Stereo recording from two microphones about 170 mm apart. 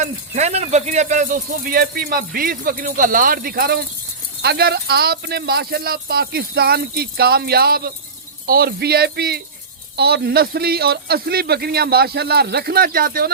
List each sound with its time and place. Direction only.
0.0 s a man's voice: 40° right (ahead or behind); by 13.3 s 60° right (ahead or behind)